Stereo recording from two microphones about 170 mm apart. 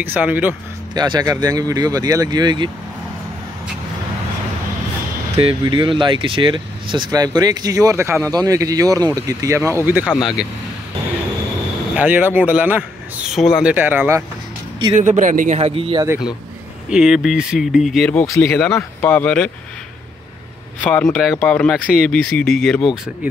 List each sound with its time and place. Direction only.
0.0 s a man's voice: 10° right (ahead or behind)
0.9 s speech: 25° right (ahead or behind)
5.4 s a man's voice: 30° right (ahead or behind)
9.8 s speech: 5° right (ahead or behind)
11.9 s a man's voice: 10° right (ahead or behind)
15.0 s a man's voice: 50° right (ahead or behind); by 16.1 s 30° right (ahead or behind)
16.9 s speech: 5° right (ahead or behind)
20.8 s speech: 5° left (ahead or behind)